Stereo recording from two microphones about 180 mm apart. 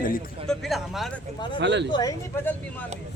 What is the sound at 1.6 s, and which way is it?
Speech, 75° right (ahead or behind).